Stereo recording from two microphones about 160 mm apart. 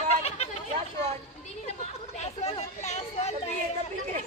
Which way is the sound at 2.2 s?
40° left (ahead or behind).